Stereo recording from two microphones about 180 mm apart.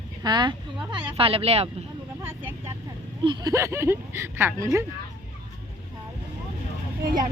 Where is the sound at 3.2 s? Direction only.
25° right (ahead or behind).